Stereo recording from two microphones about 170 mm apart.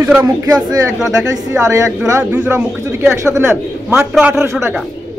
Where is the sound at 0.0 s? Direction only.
10° right (ahead or behind).